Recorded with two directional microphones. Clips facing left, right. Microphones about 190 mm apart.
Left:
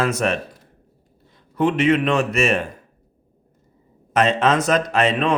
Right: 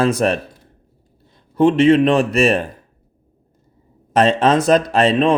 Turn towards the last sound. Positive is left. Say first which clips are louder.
# right 4 dB
turn(degrees=-30)  # may be behind; listen again after turning